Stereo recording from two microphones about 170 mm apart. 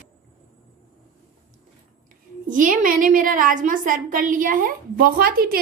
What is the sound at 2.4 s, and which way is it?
A woman's voice, 50° right (ahead or behind).